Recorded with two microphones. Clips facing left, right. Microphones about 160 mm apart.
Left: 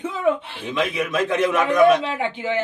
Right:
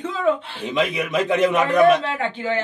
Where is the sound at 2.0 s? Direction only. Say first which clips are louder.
Even; 15° left (ahead or behind).